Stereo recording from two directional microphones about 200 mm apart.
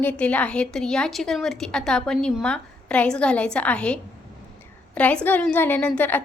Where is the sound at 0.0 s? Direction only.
5° left (ahead or behind).